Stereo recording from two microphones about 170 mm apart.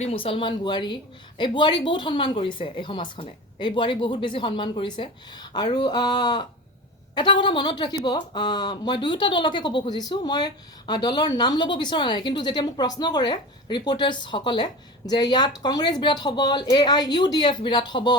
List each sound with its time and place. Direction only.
0.0 s speech: 35° left (ahead or behind)